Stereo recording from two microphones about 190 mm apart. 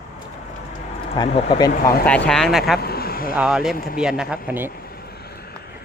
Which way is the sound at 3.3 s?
5° right (ahead or behind).